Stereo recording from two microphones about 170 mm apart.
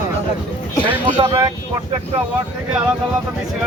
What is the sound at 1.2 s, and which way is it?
Speech, 20° right (ahead or behind).